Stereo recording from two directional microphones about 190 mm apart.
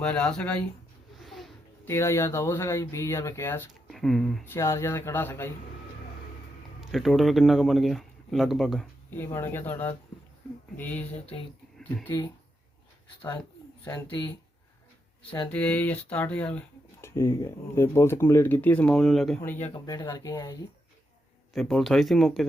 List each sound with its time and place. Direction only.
0.0 s speech: 5° left (ahead or behind)
1.2 s a sound: centre (ahead or behind)
1.9 s speech: 15° left (ahead or behind)
3.8 s speech: centre (ahead or behind)
4.4 s speech: 15° left (ahead or behind)
6.9 s speech: centre (ahead or behind)
9.0 s speech: 10° left (ahead or behind)
13.9 s speech: 20° left (ahead or behind)
15.4 s speech: 10° left (ahead or behind)
19.7 s speech: 20° left (ahead or behind)
21.5 s speech: centre (ahead or behind)